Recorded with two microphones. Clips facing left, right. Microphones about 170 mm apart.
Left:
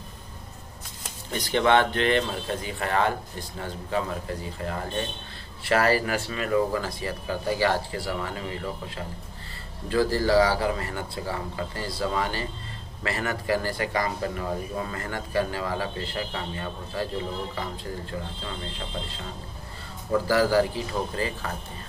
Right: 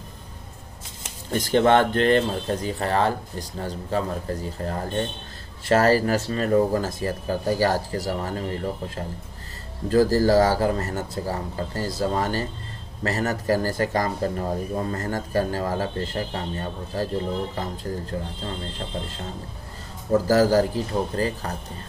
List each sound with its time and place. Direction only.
1.3 s a man's voice: 45° right (ahead or behind)